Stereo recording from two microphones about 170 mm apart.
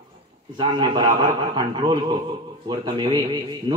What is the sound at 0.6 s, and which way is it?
A man's voice, 25° right (ahead or behind).